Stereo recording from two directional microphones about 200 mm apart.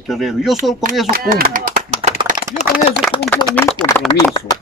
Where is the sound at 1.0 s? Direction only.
45° right (ahead or behind).